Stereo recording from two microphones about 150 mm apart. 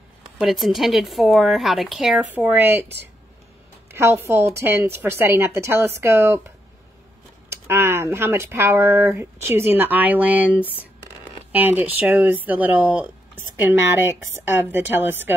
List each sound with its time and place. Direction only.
0.4 s a woman's voice: centre (ahead or behind); by 6.4 s 20° right (ahead or behind)
7.4 s speech: 15° right (ahead or behind)